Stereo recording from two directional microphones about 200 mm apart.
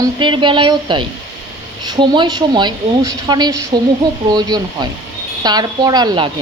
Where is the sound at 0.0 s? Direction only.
25° right (ahead or behind).